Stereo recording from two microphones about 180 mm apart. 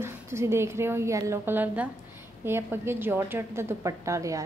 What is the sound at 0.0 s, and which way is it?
A woman's voice, 15° right (ahead or behind).